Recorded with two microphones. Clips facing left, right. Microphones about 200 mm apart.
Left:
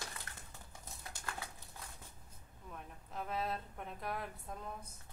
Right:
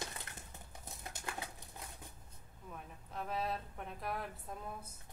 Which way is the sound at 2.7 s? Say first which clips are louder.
Even; centre (ahead or behind).